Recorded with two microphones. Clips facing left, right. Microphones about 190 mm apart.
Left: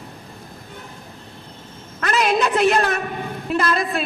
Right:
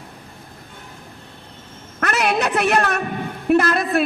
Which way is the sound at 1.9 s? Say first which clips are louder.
Left 1 dB; 60° right (ahead or behind).